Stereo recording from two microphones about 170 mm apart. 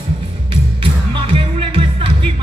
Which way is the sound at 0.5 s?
30° right (ahead or behind).